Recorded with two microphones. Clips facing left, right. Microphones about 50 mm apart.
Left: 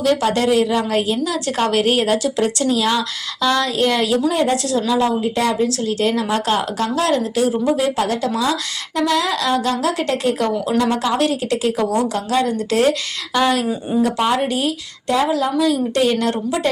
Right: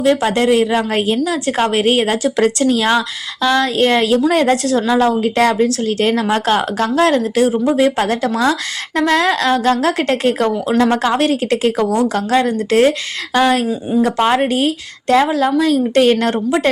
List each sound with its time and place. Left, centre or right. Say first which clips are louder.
0.0 s a woman's voice: right 3 dB; right
3.4 s speech: right 3 dB; right
3.8 s a woman's voice: right 4 dB; right
4.3 s speech: right 4 dB; right
4.5 s a woman's voice: right 4 dB; right
5.0 s speech: right 4 dB; right
5.6 s a woman's voice: right 3 dB; right
7.5 s speech: right 2 dB; right
7.8 s a woman's voice: right 4 dB; right
16.3 s a woman's voice: right 5 dB; right